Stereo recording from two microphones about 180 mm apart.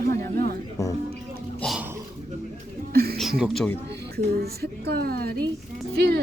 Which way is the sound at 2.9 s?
60° right (ahead or behind).